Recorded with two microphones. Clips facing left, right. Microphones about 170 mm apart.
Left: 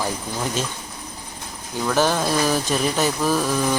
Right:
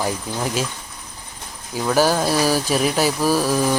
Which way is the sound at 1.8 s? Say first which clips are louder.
Right 2 dB; 10° right (ahead or behind).